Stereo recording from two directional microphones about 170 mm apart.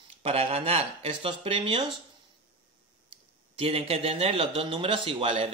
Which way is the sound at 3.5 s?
35° right (ahead or behind).